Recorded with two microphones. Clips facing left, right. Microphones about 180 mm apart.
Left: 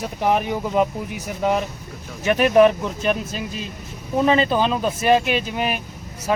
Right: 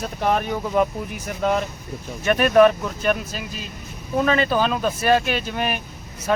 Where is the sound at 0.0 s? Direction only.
15° left (ahead or behind).